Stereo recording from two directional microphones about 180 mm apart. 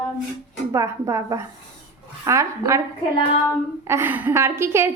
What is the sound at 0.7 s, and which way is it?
A woman's voice, 15° right (ahead or behind).